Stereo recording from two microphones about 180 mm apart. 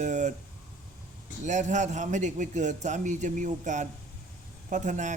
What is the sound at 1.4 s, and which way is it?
A man's voice, 40° right (ahead or behind).